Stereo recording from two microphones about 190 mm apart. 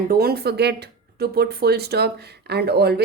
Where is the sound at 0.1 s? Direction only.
55° right (ahead or behind).